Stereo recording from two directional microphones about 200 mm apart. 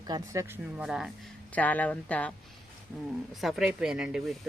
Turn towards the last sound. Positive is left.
turn(degrees=-5)  # may be behind; listen again after turning